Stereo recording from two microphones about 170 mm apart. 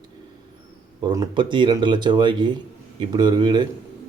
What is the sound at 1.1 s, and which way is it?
Speech, 25° right (ahead or behind).